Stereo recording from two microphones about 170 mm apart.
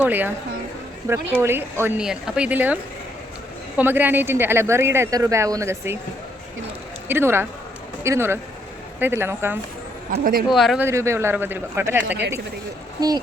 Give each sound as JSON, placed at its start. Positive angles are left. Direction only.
{"t": 0.0, "sound": "speech", "side_deg": -10}
{"t": 1.4, "sound": "speech", "side_deg": -15}
{"t": 3.8, "sound": "speech", "side_deg": -10}
{"t": 7.1, "sound": "speech", "side_deg": -15}
{"t": 10.1, "sound": "speech", "side_deg": -60}
{"t": 10.5, "sound": "speech", "side_deg": 0}
{"t": 10.8, "sound": "speech", "side_deg": -15}